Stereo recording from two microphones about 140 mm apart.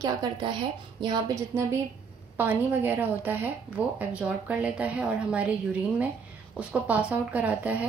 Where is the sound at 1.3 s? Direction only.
20° right (ahead or behind).